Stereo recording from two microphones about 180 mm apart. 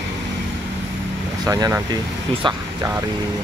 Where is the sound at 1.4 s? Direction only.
15° right (ahead or behind).